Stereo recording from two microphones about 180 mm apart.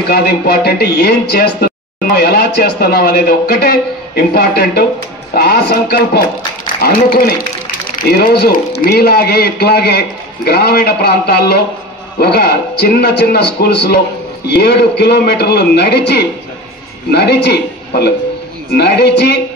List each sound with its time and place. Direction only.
0.1 s speech: 60° left (ahead or behind)